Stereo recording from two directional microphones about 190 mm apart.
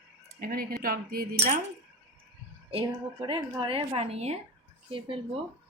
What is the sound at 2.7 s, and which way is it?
A woman's voice, 30° right (ahead or behind).